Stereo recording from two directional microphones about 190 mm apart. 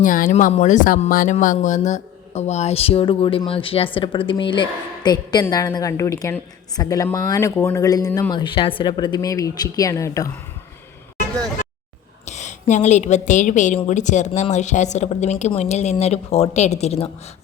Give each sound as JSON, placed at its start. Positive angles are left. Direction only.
{"t": 0.0, "sound": "a woman's voice", "side_deg": 45}
{"t": 12.2, "sound": "a woman's voice", "side_deg": 40}